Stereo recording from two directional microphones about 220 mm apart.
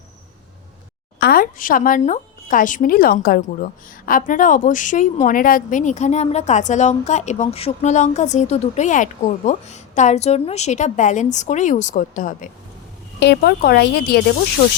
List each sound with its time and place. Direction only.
1.2 s speech: 40° left (ahead or behind)
13.1 s speech: 50° left (ahead or behind)